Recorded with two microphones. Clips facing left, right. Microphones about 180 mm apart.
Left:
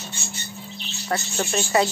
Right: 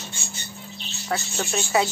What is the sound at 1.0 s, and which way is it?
Speech, centre (ahead or behind).